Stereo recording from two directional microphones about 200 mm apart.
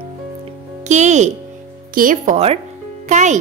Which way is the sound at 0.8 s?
35° right (ahead or behind).